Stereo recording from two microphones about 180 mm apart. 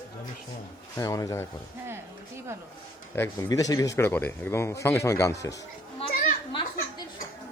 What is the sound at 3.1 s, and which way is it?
Speech, 15° left (ahead or behind).